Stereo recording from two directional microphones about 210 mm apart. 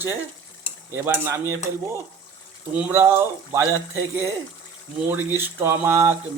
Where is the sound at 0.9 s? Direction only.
10° right (ahead or behind).